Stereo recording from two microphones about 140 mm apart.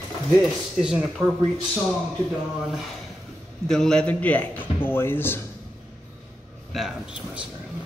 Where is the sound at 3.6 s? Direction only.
5° left (ahead or behind).